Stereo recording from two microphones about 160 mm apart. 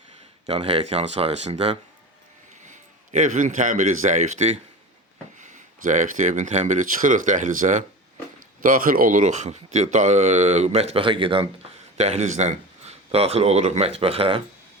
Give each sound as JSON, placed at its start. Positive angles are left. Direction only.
{"t": 0.4, "sound": "a man's voice", "side_deg": -40}
{"t": 11.9, "sound": "speech", "side_deg": -45}